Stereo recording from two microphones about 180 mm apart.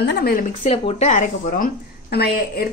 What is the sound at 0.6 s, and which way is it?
A woman's voice, 35° left (ahead or behind).